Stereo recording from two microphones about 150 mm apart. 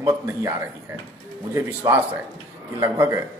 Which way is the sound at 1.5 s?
20° right (ahead or behind).